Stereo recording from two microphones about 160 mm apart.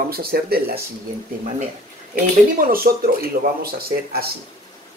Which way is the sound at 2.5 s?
65° right (ahead or behind).